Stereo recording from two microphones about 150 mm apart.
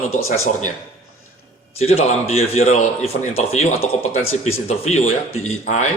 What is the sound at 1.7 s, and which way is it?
A man's voice, 45° left (ahead or behind).